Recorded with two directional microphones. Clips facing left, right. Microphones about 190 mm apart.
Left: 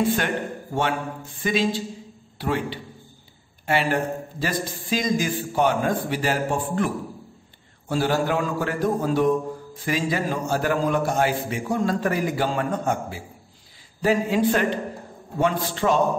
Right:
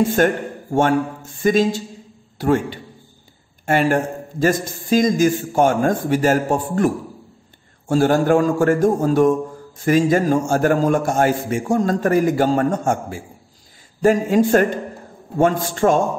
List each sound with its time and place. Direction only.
0.0 s a man's voice: 45° right (ahead or behind)
7.9 s a man's voice: 45° right (ahead or behind)